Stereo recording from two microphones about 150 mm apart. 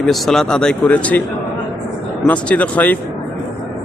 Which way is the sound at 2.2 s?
10° left (ahead or behind).